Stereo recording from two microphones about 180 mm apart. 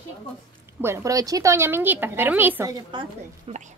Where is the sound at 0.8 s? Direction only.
15° right (ahead or behind).